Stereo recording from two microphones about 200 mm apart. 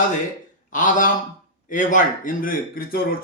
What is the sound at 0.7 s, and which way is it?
A man's voice, 40° left (ahead or behind).